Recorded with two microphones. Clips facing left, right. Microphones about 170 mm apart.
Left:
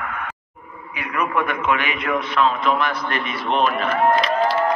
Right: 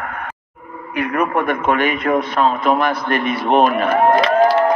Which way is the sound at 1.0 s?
45° right (ahead or behind).